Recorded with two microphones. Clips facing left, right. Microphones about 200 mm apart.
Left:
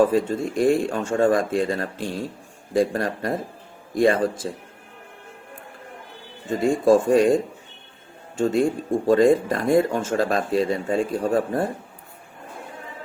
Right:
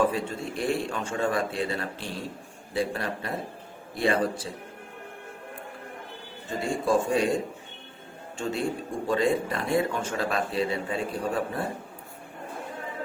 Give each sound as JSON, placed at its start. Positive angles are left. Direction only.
{"t": 0.0, "sound": "speech", "side_deg": 45}
{"t": 6.5, "sound": "speech", "side_deg": 50}
{"t": 8.4, "sound": "speech", "side_deg": 45}